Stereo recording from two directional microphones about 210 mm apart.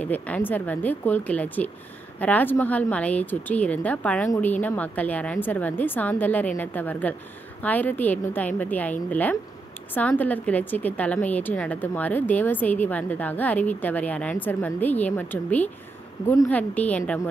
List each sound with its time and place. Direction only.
0.0 s a woman's voice: 5° left (ahead or behind)